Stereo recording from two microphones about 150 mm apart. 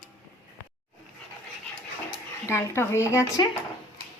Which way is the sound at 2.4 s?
15° left (ahead or behind).